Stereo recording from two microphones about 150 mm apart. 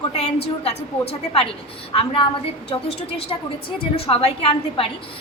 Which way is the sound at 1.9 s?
35° left (ahead or behind).